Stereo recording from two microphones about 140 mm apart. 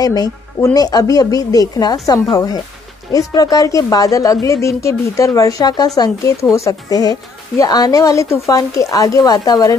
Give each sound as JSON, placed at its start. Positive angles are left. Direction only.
{"t": 0.0, "sound": "a woman's voice", "side_deg": 25}